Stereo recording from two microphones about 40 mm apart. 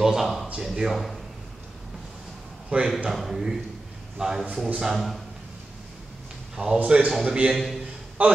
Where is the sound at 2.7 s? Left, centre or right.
Right.